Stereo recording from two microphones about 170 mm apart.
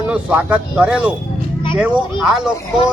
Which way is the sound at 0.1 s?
5° right (ahead or behind).